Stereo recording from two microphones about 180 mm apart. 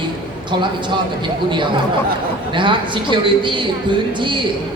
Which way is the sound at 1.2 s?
25° right (ahead or behind).